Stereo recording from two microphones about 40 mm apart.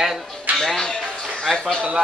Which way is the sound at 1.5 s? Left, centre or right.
Centre.